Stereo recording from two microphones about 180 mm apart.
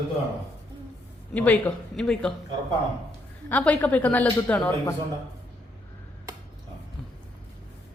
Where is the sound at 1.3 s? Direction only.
10° left (ahead or behind).